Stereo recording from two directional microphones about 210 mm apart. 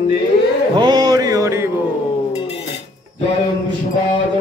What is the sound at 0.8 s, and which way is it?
Mantra, 20° right (ahead or behind).